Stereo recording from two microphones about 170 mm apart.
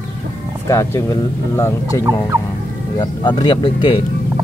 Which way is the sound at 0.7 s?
15° left (ahead or behind).